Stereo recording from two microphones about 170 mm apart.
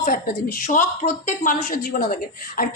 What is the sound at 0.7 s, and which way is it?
A woman's voice, 50° left (ahead or behind).